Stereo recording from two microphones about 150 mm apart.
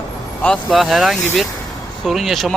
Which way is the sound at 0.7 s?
Centre (ahead or behind).